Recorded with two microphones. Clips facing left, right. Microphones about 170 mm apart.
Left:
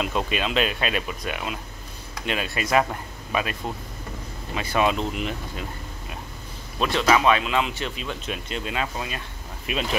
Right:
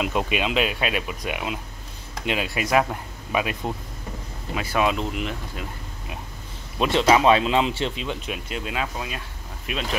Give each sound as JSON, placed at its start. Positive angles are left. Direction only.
{"t": 0.0, "sound": "speech", "side_deg": -10}
{"t": 6.8, "sound": "speech", "side_deg": -25}
{"t": 8.3, "sound": "speech", "side_deg": -5}